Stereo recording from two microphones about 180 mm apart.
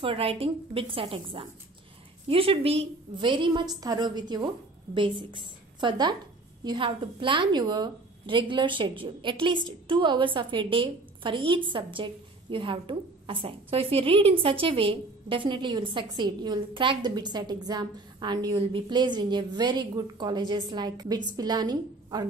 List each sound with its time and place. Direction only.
0.0 s a woman's voice: 30° right (ahead or behind)